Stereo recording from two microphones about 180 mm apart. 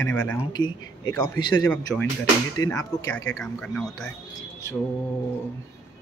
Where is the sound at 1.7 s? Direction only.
10° left (ahead or behind).